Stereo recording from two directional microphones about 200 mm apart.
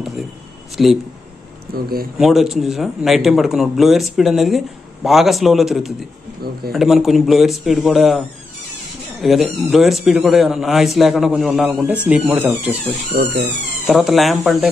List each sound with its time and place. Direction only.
0.8 s speech: centre (ahead or behind)
1.7 s speech: 50° right (ahead or behind)
2.1 s speech: centre (ahead or behind)
9.2 s speech: centre (ahead or behind)
13.1 s speech: 55° right (ahead or behind)
13.8 s speech: centre (ahead or behind)